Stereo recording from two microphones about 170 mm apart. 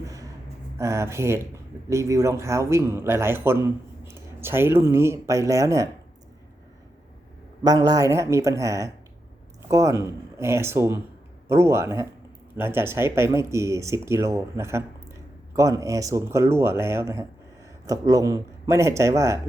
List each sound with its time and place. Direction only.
0.0 s a sound: 20° right (ahead or behind)
0.8 s speech: 15° right (ahead or behind)
7.6 s speech: 25° right (ahead or behind)